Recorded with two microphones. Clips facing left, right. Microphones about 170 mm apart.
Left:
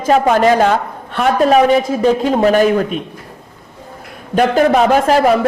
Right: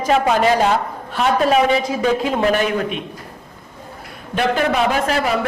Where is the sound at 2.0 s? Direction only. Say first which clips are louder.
Left 5 dB; 35° left (ahead or behind).